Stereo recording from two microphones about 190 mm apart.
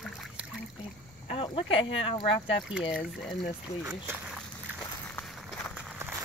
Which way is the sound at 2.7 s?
5° right (ahead or behind).